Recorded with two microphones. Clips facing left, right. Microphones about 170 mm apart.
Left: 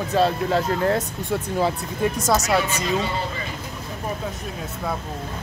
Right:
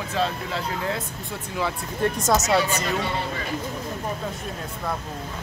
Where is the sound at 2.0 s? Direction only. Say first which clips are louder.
Even; centre (ahead or behind).